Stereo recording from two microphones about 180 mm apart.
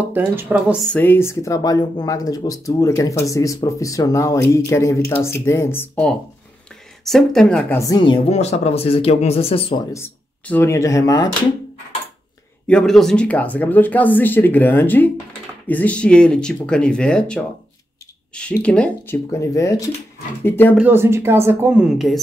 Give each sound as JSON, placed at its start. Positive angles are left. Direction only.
{"t": 0.1, "sound": "a woman's voice", "side_deg": -10}
{"t": 0.8, "sound": "speech", "side_deg": 10}
{"t": 7.8, "sound": "speech", "side_deg": 25}
{"t": 8.3, "sound": "speech", "side_deg": 35}
{"t": 9.9, "sound": "speech", "side_deg": 10}
{"t": 12.6, "sound": "speech", "side_deg": 5}
{"t": 19.4, "sound": "speech", "side_deg": 20}
{"t": 20.7, "sound": "a woman's voice", "side_deg": -10}